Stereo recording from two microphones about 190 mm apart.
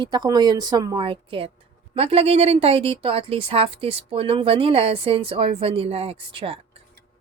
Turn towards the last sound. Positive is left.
turn(degrees=-30)  # may be behind; listen again after turning